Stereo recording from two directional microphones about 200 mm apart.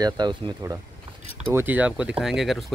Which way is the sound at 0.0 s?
20° right (ahead or behind).